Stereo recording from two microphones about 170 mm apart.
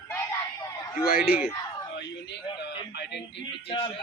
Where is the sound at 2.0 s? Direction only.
85° left.